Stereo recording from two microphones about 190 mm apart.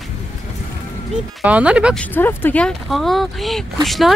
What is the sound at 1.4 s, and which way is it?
Speech, 5° right (ahead or behind).